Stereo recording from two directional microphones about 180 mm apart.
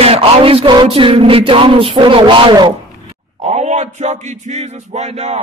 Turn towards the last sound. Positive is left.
turn(degrees=-35)  # may be behind; listen again after turning